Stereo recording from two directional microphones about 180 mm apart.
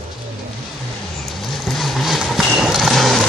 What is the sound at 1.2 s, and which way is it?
Vehicle, centre (ahead or behind).